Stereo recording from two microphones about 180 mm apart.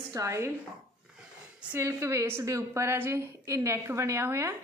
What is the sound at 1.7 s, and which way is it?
A woman's voice, 15° right (ahead or behind).